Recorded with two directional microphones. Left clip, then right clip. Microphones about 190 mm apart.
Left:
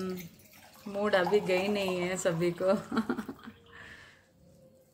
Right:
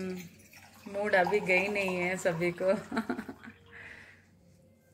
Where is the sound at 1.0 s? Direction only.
15° left (ahead or behind).